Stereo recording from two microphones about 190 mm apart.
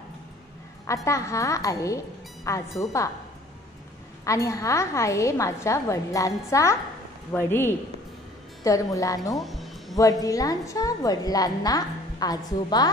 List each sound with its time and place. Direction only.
0.8 s a woman's voice: 15° left (ahead or behind)
4.2 s a woman's voice: 15° left (ahead or behind)
9.4 s music: centre (ahead or behind)
9.9 s a woman's voice: 20° left (ahead or behind)